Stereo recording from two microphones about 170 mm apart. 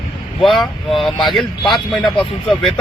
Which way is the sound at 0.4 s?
Centre (ahead or behind).